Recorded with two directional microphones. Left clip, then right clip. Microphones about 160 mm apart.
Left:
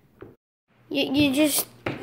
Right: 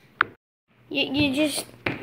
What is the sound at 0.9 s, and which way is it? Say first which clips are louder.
Speech: left 1 dB; 25° left (ahead or behind).